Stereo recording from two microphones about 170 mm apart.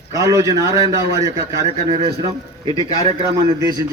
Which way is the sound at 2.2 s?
30° right (ahead or behind).